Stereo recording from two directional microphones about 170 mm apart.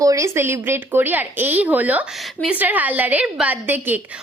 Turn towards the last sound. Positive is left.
turn(degrees=-10)  # may be behind; listen again after turning